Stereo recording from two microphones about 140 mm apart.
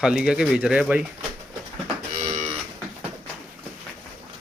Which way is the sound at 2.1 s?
60° right (ahead or behind).